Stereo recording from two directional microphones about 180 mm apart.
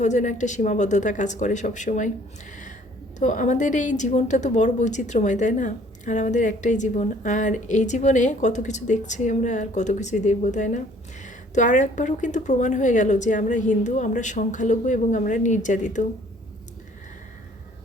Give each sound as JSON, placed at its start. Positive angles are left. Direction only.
{"t": 0.0, "sound": "speech", "side_deg": 40}